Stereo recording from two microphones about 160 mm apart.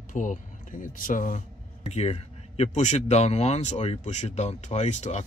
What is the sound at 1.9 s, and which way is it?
Speech, 40° left (ahead or behind).